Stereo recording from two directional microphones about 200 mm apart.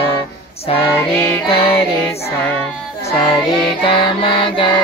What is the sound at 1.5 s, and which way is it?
Child singing, 30° left (ahead or behind).